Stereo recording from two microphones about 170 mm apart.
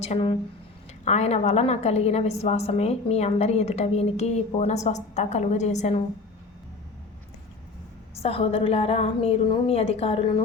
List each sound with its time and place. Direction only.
0.0 s a woman's voice: 35° left (ahead or behind)
8.1 s a woman's voice: 35° left (ahead or behind)